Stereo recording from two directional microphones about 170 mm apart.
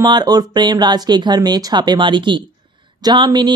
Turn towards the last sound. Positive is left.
turn(degrees=-25)  # may be behind; listen again after turning